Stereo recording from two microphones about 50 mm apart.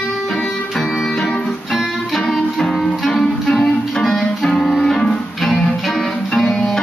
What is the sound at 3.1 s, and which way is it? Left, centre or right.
Music, centre.